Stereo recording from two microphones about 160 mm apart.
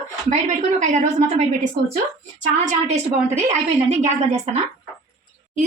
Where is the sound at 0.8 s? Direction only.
50° right (ahead or behind).